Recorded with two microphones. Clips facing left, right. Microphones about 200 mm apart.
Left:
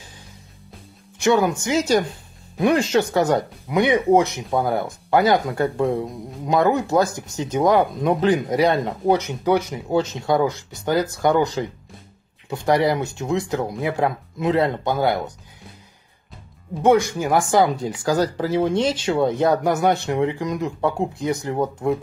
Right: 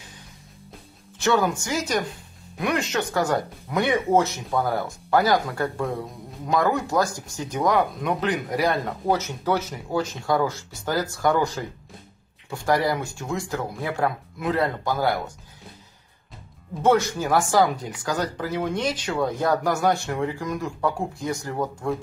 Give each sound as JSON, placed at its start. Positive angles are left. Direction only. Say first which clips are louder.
{"t": 1.2, "sound": "speech", "louder": "left 4 dB", "side_deg": 20}
{"t": 17.2, "sound": "speech", "louder": "left 2 dB", "side_deg": 15}